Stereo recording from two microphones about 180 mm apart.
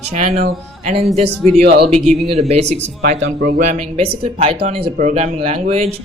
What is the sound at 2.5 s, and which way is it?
Speech, 35° right (ahead or behind).